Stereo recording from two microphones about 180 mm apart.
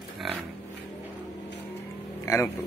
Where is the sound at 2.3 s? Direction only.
15° left (ahead or behind).